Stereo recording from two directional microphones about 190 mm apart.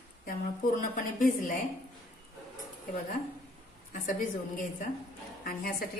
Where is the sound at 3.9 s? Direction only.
45° left (ahead or behind).